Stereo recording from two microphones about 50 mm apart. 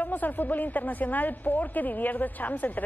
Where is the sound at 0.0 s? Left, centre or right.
Left.